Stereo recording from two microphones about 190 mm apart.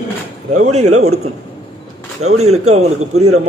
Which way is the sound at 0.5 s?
35° right (ahead or behind).